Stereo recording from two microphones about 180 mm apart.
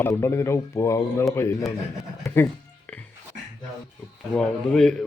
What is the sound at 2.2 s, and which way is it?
Music, 15° left (ahead or behind).